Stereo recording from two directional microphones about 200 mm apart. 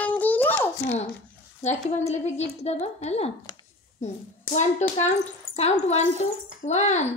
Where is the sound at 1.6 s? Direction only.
35° left (ahead or behind).